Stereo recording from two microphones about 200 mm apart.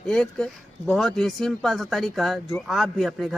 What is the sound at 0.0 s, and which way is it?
A man's voice, 5° left (ahead or behind).